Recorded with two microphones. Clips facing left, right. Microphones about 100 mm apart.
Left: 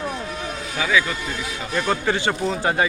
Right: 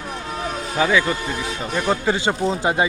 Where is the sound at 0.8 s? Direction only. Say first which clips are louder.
Right 3 dB; 30° right (ahead or behind).